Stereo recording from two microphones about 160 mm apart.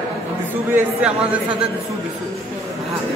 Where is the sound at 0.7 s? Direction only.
10° right (ahead or behind).